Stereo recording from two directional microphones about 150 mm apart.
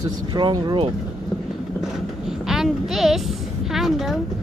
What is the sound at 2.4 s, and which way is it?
Speech, centre (ahead or behind).